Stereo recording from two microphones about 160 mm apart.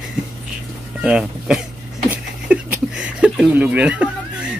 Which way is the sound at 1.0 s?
5° right (ahead or behind).